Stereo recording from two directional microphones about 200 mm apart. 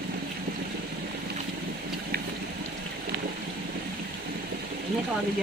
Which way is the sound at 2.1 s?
50° right (ahead or behind).